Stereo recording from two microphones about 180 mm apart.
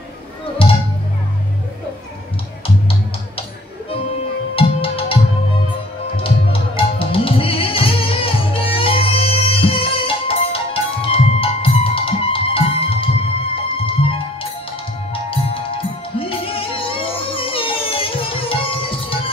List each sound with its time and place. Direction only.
0.6 s music: 30° left (ahead or behind)
4.6 s music: 30° left (ahead or behind)
15.1 s music: 30° left (ahead or behind)